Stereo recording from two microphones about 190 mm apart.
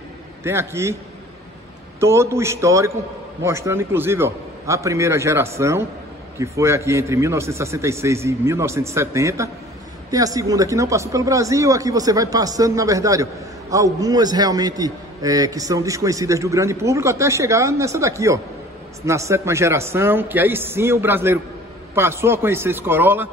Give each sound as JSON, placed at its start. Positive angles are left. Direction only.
{"t": 0.4, "sound": "speech", "side_deg": -15}
{"t": 2.0, "sound": "speech", "side_deg": -15}